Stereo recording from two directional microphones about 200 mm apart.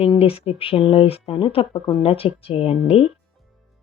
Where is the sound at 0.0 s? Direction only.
30° left (ahead or behind).